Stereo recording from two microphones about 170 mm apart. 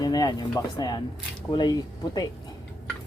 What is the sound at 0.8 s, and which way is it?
Cutlery, 25° left (ahead or behind).